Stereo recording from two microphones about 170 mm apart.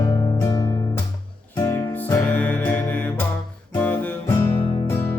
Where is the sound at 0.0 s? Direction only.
20° left (ahead or behind).